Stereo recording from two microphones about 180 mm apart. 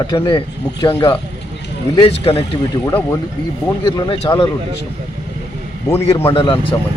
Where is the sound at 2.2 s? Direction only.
35° left (ahead or behind).